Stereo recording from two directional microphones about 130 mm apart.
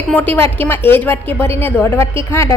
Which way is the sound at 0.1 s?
15° left (ahead or behind).